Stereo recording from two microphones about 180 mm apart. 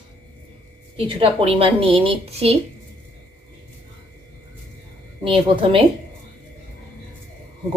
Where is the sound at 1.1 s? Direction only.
30° right (ahead or behind).